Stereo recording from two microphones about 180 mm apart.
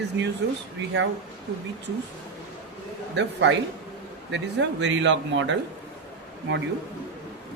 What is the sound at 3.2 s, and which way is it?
Speech, 80° right.